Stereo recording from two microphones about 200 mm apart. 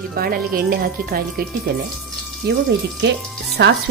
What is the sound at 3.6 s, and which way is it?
Speech, 60° right (ahead or behind).